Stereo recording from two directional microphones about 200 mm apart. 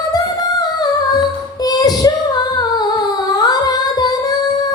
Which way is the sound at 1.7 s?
20° left (ahead or behind).